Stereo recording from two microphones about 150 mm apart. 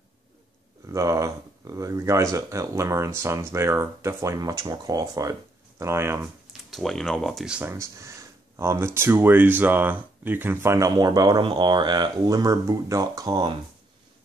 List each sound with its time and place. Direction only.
0.8 s speech: 20° right (ahead or behind)
6.7 s speech: centre (ahead or behind)
7.7 s speech: 20° right (ahead or behind)